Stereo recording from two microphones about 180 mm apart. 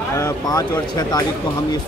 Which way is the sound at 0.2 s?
20° left (ahead or behind).